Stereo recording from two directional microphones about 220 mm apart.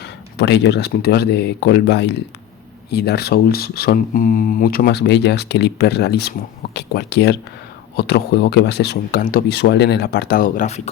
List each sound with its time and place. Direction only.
0.0 s speech: 50° left (ahead or behind); by 10.9 s 30° left (ahead or behind)